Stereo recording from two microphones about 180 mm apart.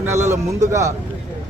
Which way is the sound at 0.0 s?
15° right (ahead or behind).